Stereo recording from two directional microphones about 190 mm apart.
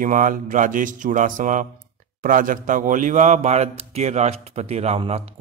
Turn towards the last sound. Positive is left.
turn(degrees=-30)  # may be behind; listen again after turning